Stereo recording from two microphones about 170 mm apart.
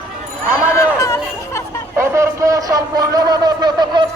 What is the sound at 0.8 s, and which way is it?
Chatter, 20° left (ahead or behind).